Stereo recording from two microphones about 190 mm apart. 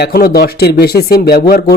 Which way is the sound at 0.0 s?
55° left (ahead or behind).